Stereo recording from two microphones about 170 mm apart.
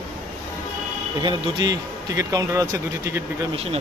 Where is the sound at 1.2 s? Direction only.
20° right (ahead or behind).